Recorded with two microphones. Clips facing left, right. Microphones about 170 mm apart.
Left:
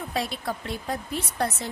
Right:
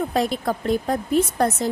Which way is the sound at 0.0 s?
50° right (ahead or behind).